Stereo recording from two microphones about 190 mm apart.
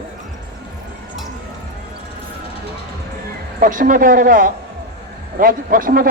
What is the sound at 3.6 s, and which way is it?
Speech, 45° right (ahead or behind).